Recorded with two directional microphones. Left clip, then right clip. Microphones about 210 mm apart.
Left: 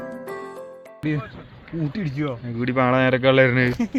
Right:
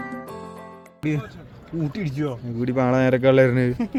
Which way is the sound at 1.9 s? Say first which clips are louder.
Left 1 dB; 40° left (ahead or behind).